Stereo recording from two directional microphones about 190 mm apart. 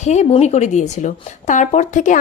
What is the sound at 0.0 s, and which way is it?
Speech, 35° left (ahead or behind).